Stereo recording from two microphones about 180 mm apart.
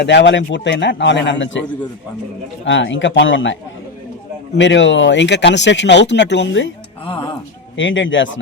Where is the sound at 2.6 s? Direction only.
90° left.